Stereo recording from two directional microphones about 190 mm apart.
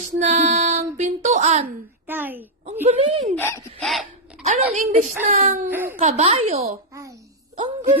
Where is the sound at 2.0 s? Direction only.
10° right (ahead or behind).